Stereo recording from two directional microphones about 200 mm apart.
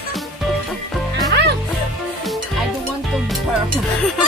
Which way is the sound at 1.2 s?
55° right (ahead or behind).